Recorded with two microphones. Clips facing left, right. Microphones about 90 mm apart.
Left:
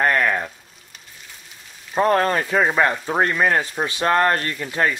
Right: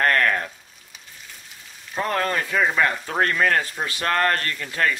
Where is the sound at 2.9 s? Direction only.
15° left (ahead or behind).